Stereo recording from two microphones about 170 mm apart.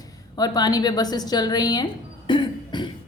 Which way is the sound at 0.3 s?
25° left (ahead or behind).